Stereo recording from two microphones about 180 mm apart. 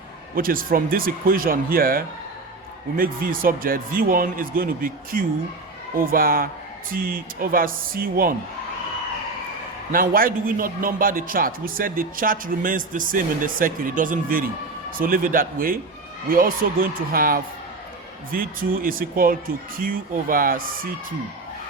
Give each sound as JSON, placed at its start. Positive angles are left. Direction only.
{"t": 0.3, "sound": "a man's voice", "side_deg": -50}
{"t": 9.9, "sound": "a man's voice", "side_deg": -55}